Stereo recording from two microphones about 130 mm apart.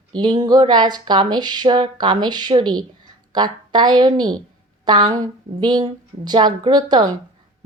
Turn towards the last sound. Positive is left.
turn(degrees=-35)  # may be behind; listen again after turning